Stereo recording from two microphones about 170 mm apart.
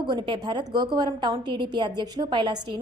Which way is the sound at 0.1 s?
25° right (ahead or behind).